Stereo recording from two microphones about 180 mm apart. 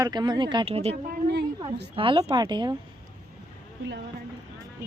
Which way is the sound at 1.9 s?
25° right (ahead or behind).